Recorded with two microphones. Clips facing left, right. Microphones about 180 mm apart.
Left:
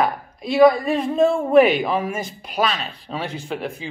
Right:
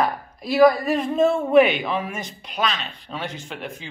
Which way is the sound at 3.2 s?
35° left (ahead or behind).